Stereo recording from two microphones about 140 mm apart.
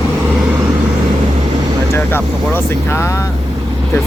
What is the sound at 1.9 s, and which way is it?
Speech, 15° left (ahead or behind).